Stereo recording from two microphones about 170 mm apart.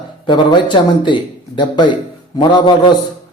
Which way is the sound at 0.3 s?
25° left (ahead or behind).